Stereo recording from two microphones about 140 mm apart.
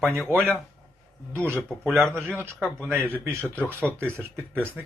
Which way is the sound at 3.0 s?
20° right (ahead or behind).